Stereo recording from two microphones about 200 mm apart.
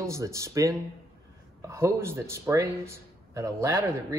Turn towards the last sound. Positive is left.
turn(degrees=-15)  # may be behind; listen again after turning